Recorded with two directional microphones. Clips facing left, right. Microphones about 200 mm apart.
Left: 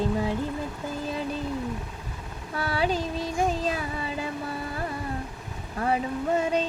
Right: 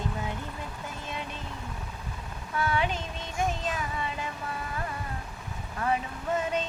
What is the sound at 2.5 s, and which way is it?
Speech, 35° left (ahead or behind).